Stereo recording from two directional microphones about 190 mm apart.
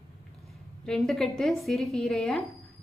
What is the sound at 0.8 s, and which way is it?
A woman's voice, centre (ahead or behind).